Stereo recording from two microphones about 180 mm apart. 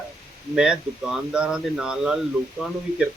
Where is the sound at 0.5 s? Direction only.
5° right (ahead or behind).